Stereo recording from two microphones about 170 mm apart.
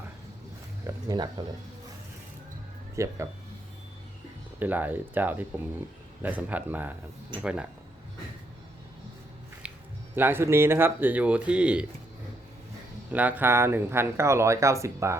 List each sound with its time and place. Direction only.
0.9 s a sound: 20° right (ahead or behind)
2.9 s speech: 15° right (ahead or behind)
4.6 s speech: 10° right (ahead or behind)
9.6 s music: 5° right (ahead or behind)
10.2 s speech: 10° right (ahead or behind)
13.1 s speech: 10° right (ahead or behind)